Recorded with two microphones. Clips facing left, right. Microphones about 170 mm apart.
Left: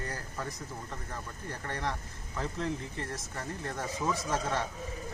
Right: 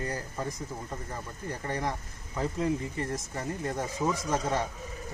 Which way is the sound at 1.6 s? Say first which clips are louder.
Right 3 dB; 15° right (ahead or behind).